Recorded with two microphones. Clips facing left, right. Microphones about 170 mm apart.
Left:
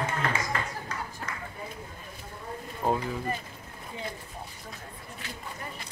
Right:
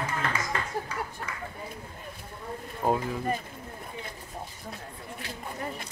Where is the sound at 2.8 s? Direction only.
5° right (ahead or behind).